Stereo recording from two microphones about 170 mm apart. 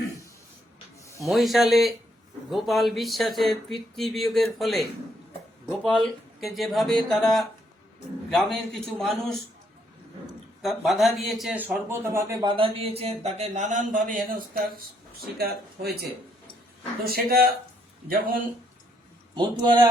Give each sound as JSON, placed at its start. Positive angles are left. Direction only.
{"t": 1.2, "sound": "speech", "side_deg": 0}
{"t": 10.6, "sound": "speech", "side_deg": 0}
{"t": 15.4, "sound": "speech", "side_deg": -65}
{"t": 19.3, "sound": "a man's voice", "side_deg": -25}